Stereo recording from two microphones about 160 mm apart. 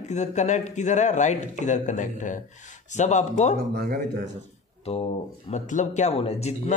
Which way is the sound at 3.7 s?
70° right (ahead or behind).